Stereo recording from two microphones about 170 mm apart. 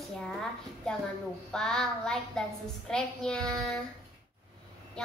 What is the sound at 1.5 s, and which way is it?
A woman's voice, 5° left (ahead or behind).